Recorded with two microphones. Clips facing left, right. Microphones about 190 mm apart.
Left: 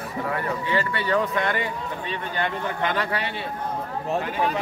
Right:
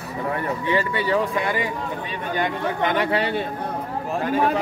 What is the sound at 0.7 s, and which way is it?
Speech, 10° right (ahead or behind).